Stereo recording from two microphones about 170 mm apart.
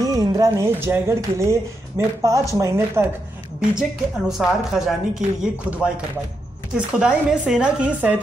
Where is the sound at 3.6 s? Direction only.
5° right (ahead or behind).